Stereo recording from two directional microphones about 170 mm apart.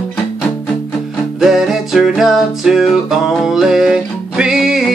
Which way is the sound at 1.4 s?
Centre (ahead or behind).